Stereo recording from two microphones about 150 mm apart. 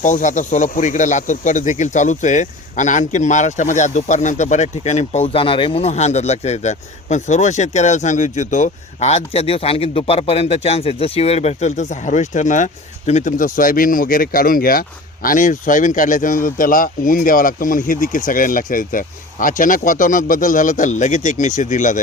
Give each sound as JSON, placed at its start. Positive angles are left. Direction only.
{"t": 0.0, "sound": "speech", "side_deg": 55}